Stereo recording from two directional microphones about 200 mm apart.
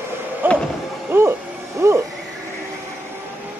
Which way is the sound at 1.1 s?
10° right (ahead or behind).